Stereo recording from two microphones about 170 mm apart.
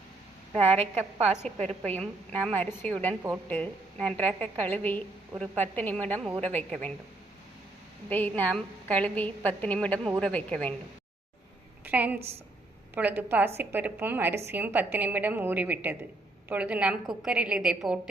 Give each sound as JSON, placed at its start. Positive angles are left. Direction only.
{"t": 1.2, "sound": "a woman's voice", "side_deg": -40}
{"t": 1.6, "sound": "a woman's voice", "side_deg": 5}
{"t": 8.1, "sound": "a woman's voice", "side_deg": 10}
{"t": 11.9, "sound": "a woman's voice", "side_deg": -10}